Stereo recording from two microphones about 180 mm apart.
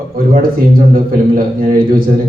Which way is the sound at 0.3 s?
55° right (ahead or behind).